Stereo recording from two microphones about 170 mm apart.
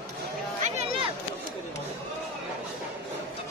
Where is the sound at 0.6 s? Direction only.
40° right (ahead or behind).